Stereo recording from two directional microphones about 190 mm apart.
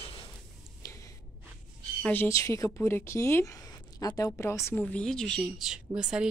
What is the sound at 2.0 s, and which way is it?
Speech, 10° left (ahead or behind).